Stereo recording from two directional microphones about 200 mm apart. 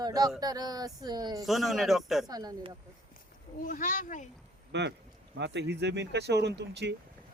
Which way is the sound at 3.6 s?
40° left (ahead or behind).